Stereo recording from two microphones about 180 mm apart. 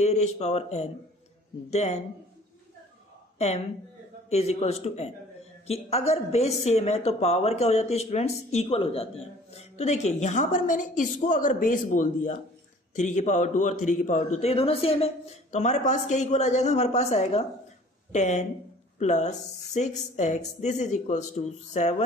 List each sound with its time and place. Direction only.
0.0 s a woman's voice: 40° left (ahead or behind)
3.3 s a woman's voice: 35° left (ahead or behind)